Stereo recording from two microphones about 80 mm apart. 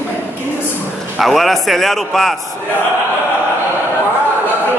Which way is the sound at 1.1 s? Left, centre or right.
Centre.